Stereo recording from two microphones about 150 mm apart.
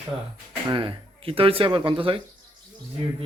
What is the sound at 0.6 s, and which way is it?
Speech, 35° right (ahead or behind).